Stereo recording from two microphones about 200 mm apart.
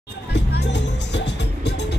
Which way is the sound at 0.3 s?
60° left (ahead or behind).